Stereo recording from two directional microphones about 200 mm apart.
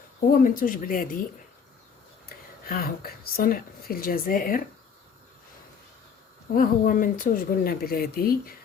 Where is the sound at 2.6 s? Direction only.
50° left (ahead or behind).